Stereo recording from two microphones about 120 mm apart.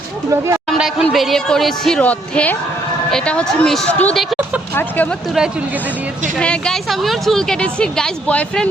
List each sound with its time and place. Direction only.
0.3 s speech: 25° right (ahead or behind)
0.8 s a woman's voice: 5° right (ahead or behind); by 5.0 s 15° left (ahead or behind)
6.4 s a woman's voice: 5° left (ahead or behind)